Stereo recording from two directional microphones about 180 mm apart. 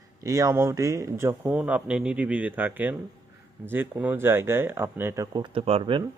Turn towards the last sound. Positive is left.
turn(degrees=-30)  # may be behind; listen again after turning